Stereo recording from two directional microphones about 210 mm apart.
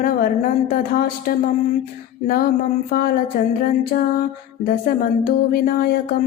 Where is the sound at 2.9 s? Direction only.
45° left (ahead or behind).